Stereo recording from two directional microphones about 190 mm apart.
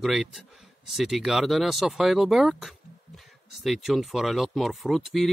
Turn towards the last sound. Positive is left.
turn(degrees=0)  # may be behind; listen again after turning